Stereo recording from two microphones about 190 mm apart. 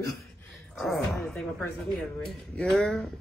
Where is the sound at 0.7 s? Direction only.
Centre (ahead or behind).